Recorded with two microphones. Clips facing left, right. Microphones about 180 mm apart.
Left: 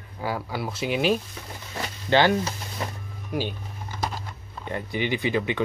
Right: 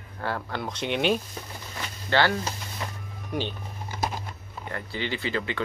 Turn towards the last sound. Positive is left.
turn(degrees=15)  # may be behind; listen again after turning